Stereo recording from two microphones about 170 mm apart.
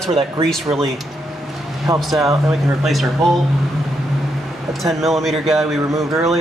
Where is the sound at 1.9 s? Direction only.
Centre (ahead or behind).